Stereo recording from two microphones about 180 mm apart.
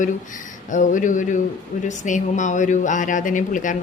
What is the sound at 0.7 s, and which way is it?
Speech, 45° left (ahead or behind).